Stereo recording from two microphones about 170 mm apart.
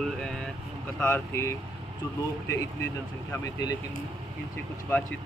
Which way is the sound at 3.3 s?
20° left (ahead or behind).